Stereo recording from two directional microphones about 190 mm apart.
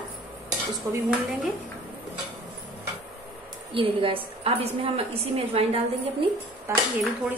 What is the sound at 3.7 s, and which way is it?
A woman's voice, 30° right (ahead or behind).